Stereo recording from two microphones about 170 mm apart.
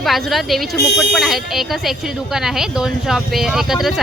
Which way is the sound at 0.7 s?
75° left (ahead or behind).